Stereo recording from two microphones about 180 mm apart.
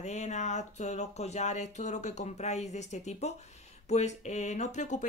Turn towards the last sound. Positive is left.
turn(degrees=40)  # may be behind; listen again after turning